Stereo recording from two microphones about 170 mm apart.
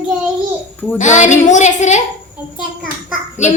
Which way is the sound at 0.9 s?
45° left (ahead or behind).